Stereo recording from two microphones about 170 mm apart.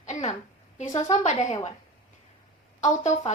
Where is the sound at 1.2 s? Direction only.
45° left (ahead or behind).